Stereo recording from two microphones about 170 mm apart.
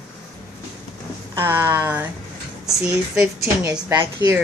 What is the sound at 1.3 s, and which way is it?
Speech, 15° right (ahead or behind).